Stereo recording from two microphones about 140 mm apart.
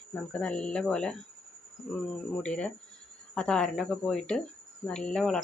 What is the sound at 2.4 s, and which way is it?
Speech, 5° left (ahead or behind).